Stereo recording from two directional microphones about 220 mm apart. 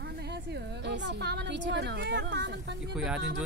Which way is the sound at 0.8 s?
50° right (ahead or behind).